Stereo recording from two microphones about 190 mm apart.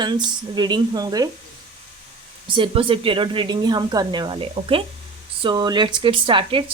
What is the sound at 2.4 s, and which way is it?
Speech, 25° right (ahead or behind).